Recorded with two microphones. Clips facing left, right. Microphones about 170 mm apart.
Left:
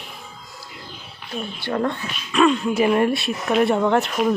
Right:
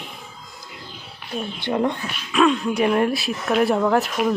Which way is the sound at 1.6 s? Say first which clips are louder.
Right 1 dB; 15° right (ahead or behind).